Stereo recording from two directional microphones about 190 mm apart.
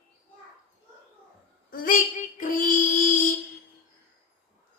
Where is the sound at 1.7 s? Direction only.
45° left (ahead or behind).